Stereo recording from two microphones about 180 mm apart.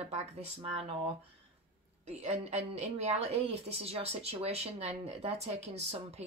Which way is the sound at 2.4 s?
35° right (ahead or behind).